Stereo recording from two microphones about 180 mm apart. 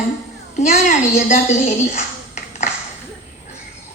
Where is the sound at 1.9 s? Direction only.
40° left (ahead or behind).